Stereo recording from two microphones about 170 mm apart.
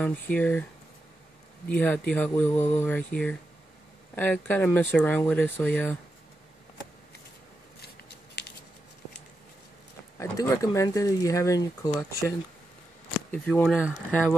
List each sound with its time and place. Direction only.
0.0 s speech: 10° left (ahead or behind)
1.7 s speech: 5° left (ahead or behind)
10.3 s speech: 20° left (ahead or behind)
13.3 s speech: 5° left (ahead or behind)